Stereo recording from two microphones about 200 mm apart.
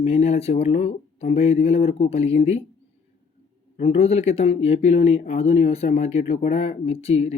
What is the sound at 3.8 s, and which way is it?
Speech, 30° left (ahead or behind).